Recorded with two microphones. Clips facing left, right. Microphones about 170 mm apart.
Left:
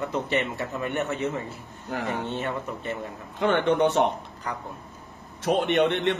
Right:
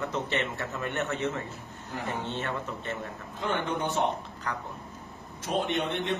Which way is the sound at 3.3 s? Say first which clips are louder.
Left 9 dB; 75° left (ahead or behind).